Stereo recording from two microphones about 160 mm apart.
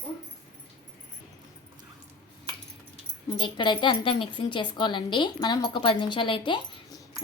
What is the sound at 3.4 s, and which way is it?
Speech, 30° left (ahead or behind).